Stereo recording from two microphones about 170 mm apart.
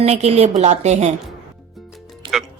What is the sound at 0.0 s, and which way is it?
A woman's voice, 35° right (ahead or behind).